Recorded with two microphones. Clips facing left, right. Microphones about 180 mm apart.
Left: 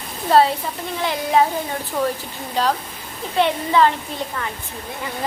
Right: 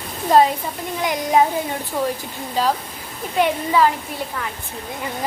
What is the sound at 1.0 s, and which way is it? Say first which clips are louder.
Speech: right 1 dB; 15° right (ahead or behind).